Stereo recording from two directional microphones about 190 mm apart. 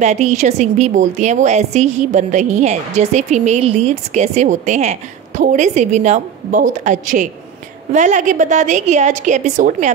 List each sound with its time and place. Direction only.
0.0 s a woman's voice: 40° right (ahead or behind)